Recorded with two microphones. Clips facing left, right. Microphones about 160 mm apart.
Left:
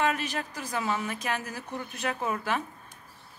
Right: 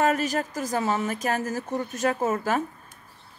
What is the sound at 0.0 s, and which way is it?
Speech, 45° right (ahead or behind).